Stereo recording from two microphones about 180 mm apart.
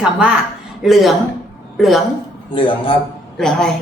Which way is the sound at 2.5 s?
30° left (ahead or behind).